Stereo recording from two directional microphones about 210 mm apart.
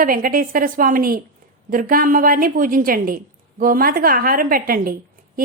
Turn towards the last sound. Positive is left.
turn(degrees=-45)  # may be behind; listen again after turning